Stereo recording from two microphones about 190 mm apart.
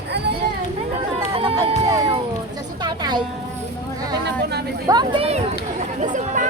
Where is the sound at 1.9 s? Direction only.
15° right (ahead or behind).